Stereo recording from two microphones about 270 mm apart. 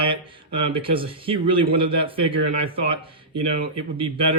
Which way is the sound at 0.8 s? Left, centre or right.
Centre.